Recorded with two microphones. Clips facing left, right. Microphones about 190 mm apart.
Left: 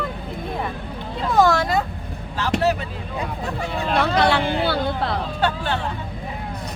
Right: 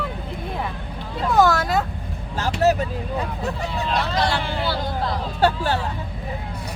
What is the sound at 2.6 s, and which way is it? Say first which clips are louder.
Vehicle: right 4 dB; 40° right (ahead or behind).